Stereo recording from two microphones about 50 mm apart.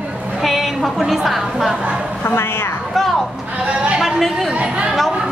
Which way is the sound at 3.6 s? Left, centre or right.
Right.